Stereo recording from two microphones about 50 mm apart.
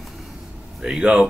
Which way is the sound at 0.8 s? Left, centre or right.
Centre.